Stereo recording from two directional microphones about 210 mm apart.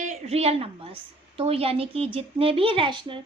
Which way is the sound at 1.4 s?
25° right (ahead or behind).